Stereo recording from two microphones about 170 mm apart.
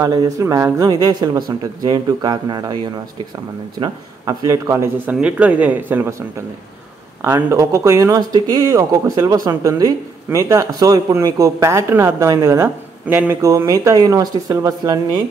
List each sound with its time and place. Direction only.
0.0 s speech: 20° right (ahead or behind)
7.2 s speech: 15° right (ahead or behind)